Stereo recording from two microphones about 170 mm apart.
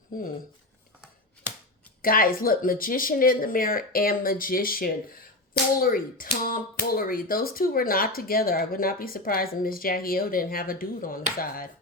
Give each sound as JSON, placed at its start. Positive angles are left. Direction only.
{"t": 0.1, "sound": "speech", "side_deg": 60}
{"t": 2.0, "sound": "speech", "side_deg": 60}